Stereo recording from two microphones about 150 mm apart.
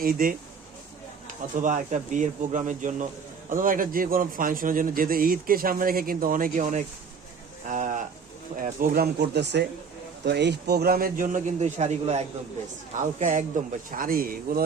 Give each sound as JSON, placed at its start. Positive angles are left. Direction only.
{"t": 0.0, "sound": "a man's voice", "side_deg": -70}
{"t": 1.6, "sound": "a man's voice", "side_deg": -55}
{"t": 13.9, "sound": "a man's voice", "side_deg": -70}